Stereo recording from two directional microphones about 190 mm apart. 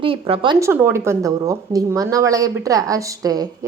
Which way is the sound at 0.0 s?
30° right (ahead or behind).